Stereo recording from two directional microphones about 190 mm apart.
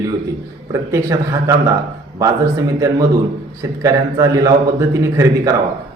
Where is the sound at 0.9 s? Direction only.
15° right (ahead or behind).